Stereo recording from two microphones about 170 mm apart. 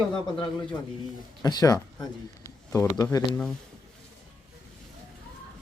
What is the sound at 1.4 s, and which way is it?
Speech, 20° left (ahead or behind).